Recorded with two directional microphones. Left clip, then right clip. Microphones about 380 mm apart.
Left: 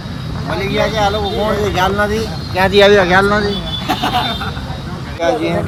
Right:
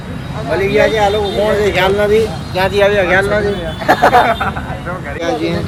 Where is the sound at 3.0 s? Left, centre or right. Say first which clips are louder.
Even; centre.